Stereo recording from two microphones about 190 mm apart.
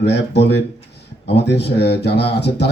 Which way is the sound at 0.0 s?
65° left (ahead or behind).